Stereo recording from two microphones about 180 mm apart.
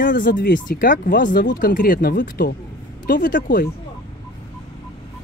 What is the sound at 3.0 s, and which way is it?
Speech, 50° left (ahead or behind).